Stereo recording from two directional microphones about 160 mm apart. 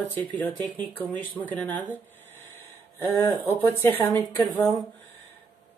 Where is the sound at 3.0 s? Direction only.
15° left (ahead or behind).